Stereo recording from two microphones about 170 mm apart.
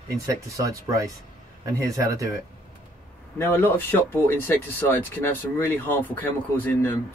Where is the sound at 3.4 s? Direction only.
10° left (ahead or behind).